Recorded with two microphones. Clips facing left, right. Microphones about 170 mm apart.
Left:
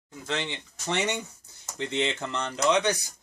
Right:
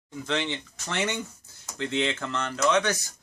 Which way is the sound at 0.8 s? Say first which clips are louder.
Left 1 dB; 20° left (ahead or behind).